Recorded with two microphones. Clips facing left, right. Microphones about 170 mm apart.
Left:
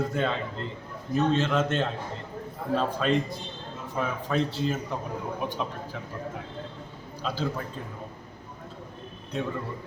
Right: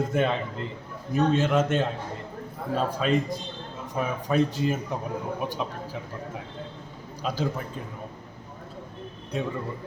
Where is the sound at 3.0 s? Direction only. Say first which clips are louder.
Right 2 dB; 5° right (ahead or behind).